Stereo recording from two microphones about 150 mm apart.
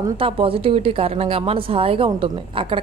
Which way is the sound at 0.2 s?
40° right (ahead or behind).